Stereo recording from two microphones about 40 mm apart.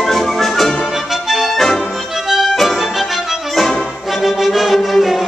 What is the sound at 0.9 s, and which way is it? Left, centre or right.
Music, centre.